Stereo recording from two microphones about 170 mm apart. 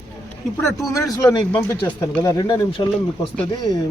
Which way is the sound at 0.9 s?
20° left (ahead or behind).